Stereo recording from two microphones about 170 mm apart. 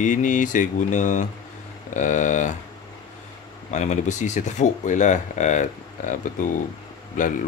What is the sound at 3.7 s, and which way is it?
Speech, 45° left (ahead or behind).